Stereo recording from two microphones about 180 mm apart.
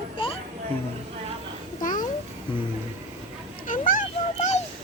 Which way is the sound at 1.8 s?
50° left (ahead or behind).